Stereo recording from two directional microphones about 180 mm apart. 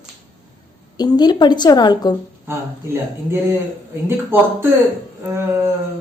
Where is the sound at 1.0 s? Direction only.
20° left (ahead or behind).